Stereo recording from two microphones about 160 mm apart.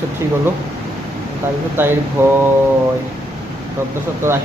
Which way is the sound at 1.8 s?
15° right (ahead or behind).